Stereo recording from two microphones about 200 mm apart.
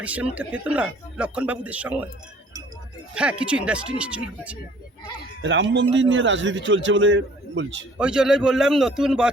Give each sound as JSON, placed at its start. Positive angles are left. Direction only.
{"t": 0.0, "sound": "speech", "side_deg": -5}
{"t": 3.2, "sound": "a man's voice", "side_deg": -5}
{"t": 5.4, "sound": "a man's voice", "side_deg": -65}
{"t": 7.9, "sound": "a man's voice", "side_deg": -5}